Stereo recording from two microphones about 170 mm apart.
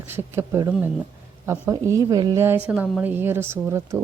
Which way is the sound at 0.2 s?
15° right (ahead or behind).